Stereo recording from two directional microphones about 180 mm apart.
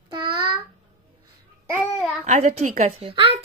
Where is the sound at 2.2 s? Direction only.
40° right (ahead or behind).